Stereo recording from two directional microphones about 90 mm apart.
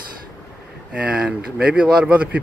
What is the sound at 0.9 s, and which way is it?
Speech, 10° right (ahead or behind).